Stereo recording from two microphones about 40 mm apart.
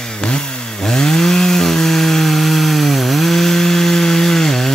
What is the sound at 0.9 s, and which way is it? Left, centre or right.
Chainsaw, centre.